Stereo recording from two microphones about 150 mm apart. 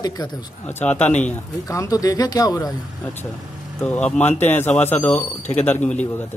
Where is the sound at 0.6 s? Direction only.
10° left (ahead or behind).